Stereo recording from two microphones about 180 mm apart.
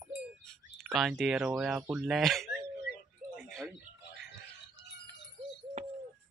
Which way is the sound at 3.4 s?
Centre (ahead or behind).